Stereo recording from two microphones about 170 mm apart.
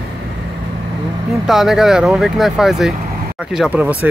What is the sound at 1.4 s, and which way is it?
Speech, centre (ahead or behind).